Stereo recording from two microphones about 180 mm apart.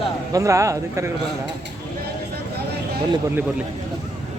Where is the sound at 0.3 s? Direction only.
15° right (ahead or behind).